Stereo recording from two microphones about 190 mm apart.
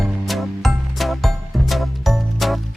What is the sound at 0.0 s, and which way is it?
Music, centre (ahead or behind).